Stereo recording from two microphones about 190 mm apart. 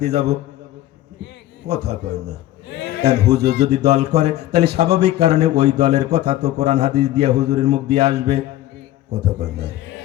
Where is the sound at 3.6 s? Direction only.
35° right (ahead or behind).